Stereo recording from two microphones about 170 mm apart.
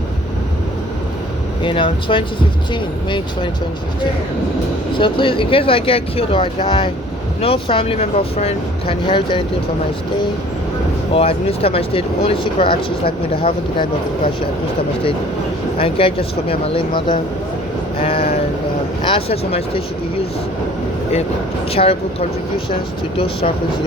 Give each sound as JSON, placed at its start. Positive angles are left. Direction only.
{"t": 1.6, "sound": "speech", "side_deg": 30}
{"t": 4.9, "sound": "speech", "side_deg": 30}
{"t": 11.1, "sound": "speech", "side_deg": 35}
{"t": 15.8, "sound": "speech", "side_deg": 30}
{"t": 21.7, "sound": "speech", "side_deg": 35}